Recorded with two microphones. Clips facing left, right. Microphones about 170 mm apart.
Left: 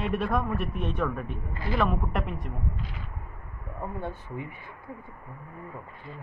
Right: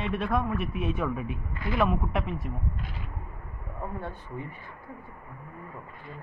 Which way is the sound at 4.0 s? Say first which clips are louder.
Left 2 dB; 20° left (ahead or behind).